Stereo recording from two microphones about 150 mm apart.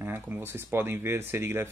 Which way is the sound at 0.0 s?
15° right (ahead or behind).